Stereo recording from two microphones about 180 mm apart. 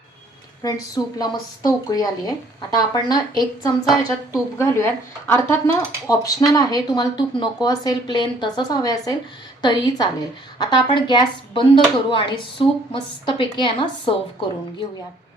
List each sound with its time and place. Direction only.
0.6 s a woman's voice: 20° left (ahead or behind)